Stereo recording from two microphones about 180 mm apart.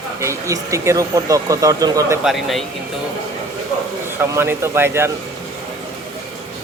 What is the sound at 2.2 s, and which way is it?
Speech, centre (ahead or behind).